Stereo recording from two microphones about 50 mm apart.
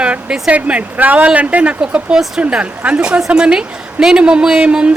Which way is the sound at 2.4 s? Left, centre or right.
Right.